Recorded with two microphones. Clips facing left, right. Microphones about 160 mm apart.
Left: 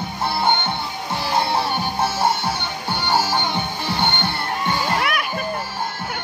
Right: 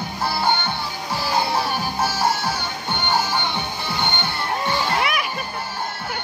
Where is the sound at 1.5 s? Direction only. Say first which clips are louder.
Left 1 dB; 25° left (ahead or behind).